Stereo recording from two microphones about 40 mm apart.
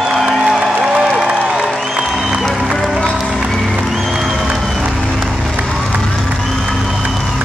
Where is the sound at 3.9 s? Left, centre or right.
Centre.